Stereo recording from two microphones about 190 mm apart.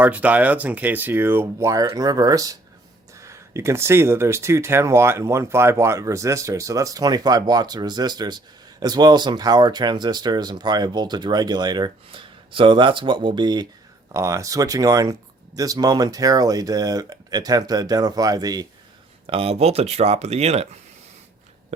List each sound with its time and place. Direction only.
0.0 s speech: 5° right (ahead or behind)
19.3 s speech: 30° right (ahead or behind)